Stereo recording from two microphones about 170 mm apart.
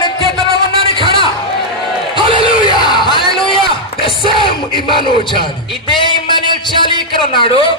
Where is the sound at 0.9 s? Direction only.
30° left (ahead or behind).